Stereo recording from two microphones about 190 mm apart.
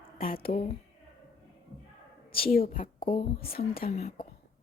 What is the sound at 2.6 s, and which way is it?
Speech, 45° left (ahead or behind).